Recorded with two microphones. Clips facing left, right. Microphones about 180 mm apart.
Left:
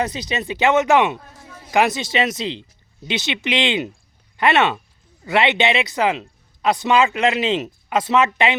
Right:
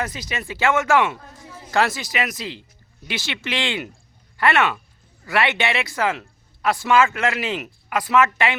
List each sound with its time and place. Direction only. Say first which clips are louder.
0.0 s speech: left 5 dB; 20° left (ahead or behind)